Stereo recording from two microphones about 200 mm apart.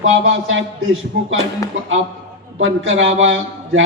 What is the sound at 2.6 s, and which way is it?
A man's voice, 70° right (ahead or behind).